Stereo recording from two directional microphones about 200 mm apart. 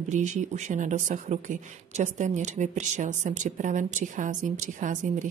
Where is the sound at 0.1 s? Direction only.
35° right (ahead or behind).